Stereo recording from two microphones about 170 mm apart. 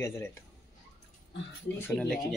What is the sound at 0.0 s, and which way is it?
Speech, 15° left (ahead or behind).